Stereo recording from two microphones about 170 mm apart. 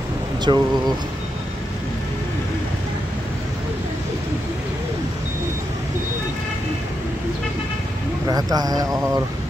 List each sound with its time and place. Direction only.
0.5 s speech: 30° right (ahead or behind)
8.3 s speech: 20° right (ahead or behind)